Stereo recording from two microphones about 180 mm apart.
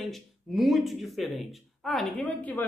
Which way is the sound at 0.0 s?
Centre (ahead or behind).